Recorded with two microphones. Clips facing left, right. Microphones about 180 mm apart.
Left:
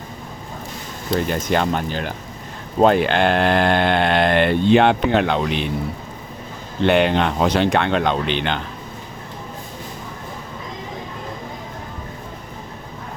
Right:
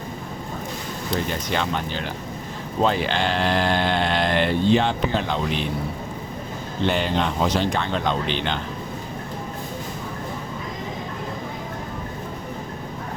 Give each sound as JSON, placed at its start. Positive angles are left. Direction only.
{"t": 1.3, "sound": "speech", "side_deg": 50}
{"t": 6.8, "sound": "speech", "side_deg": 65}